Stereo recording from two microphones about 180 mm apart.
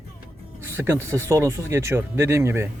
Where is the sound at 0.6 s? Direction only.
15° right (ahead or behind).